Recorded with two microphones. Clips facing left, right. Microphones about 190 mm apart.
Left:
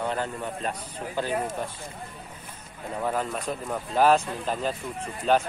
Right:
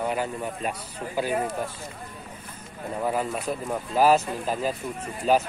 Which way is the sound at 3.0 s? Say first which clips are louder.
Right 2 dB; 10° right (ahead or behind).